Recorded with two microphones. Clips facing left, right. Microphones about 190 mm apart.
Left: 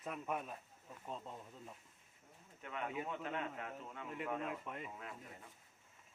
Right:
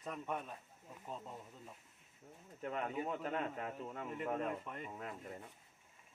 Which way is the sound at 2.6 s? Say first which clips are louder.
Right 4 dB; 40° right (ahead or behind).